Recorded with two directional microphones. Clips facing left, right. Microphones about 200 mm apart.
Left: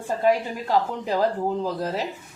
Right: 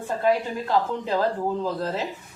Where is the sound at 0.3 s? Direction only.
10° left (ahead or behind).